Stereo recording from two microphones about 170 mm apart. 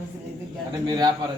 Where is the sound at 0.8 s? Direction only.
25° right (ahead or behind).